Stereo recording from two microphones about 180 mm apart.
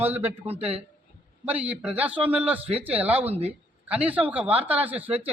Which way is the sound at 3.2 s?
35° right (ahead or behind).